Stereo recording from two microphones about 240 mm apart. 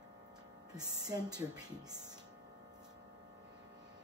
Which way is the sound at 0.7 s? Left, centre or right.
Centre.